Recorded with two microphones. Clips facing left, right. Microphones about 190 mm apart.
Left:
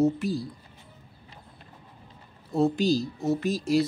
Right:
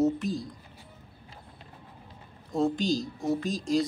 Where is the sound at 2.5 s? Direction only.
5° left (ahead or behind).